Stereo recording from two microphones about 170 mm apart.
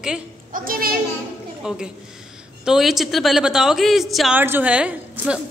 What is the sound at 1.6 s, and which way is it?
A woman's voice, 5° right (ahead or behind).